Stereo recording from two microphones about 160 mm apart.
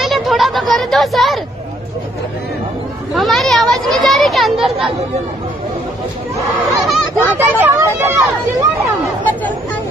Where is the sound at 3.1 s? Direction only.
Centre (ahead or behind).